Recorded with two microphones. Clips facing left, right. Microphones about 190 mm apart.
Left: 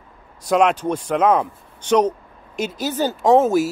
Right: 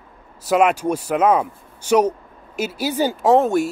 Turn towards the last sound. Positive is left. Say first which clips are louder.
# left 1 dB
turn(degrees=0)  # may be behind; listen again after turning